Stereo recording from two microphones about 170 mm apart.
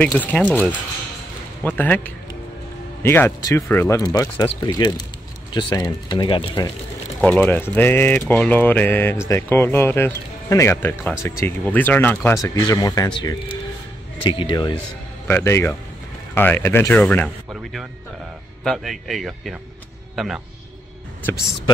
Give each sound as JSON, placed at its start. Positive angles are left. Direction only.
{"t": 0.0, "sound": "speech", "side_deg": 10}
{"t": 7.2, "sound": "speech", "side_deg": 5}
{"t": 15.2, "sound": "speech", "side_deg": 15}
{"t": 18.6, "sound": "speech", "side_deg": 0}